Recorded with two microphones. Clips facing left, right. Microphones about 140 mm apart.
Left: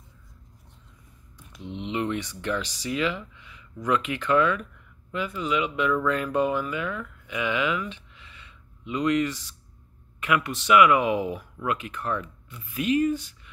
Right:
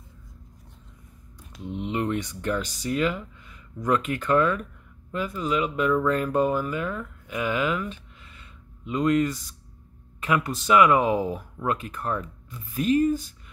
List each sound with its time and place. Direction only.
1.7 s speech: 45° right (ahead or behind)